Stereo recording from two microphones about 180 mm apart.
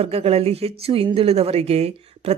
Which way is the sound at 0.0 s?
35° right (ahead or behind).